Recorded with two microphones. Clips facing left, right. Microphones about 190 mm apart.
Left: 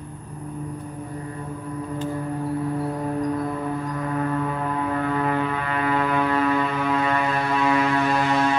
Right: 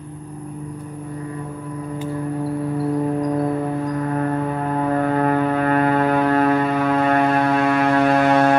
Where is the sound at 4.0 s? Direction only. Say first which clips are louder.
Right 1 dB; 45° right (ahead or behind).